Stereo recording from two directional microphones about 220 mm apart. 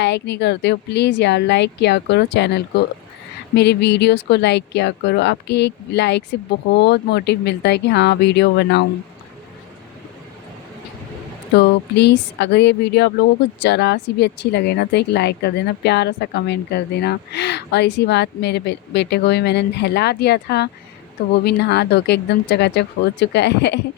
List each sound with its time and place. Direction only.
0.0 s speech: 50° left (ahead or behind)
11.5 s speech: 50° left (ahead or behind)